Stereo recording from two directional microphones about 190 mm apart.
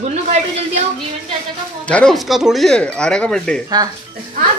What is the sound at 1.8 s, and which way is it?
Speech, 5° left (ahead or behind).